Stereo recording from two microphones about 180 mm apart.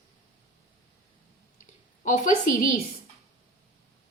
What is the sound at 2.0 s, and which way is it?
Speech, 50° left (ahead or behind).